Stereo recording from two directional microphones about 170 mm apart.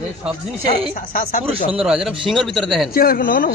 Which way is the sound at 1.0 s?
55° left (ahead or behind).